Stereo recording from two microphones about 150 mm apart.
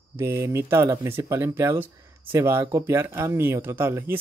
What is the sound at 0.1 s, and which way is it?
Speech, 15° right (ahead or behind).